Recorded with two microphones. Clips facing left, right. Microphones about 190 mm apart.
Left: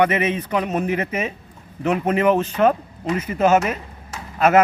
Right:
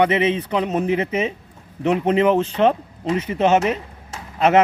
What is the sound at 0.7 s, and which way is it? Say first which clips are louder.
Speech: right 2 dB; 20° right (ahead or behind).